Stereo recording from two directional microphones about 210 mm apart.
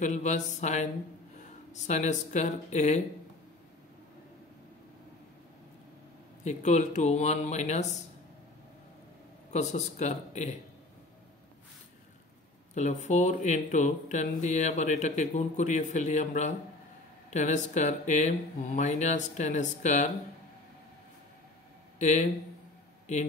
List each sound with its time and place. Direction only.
0.0 s speech: 35° left (ahead or behind)
6.4 s speech: 35° left (ahead or behind)
9.5 s speech: 35° left (ahead or behind)
12.7 s speech: 35° left (ahead or behind)
22.0 s speech: 35° left (ahead or behind)